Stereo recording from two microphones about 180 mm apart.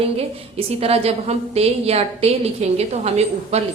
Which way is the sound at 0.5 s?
35° right (ahead or behind).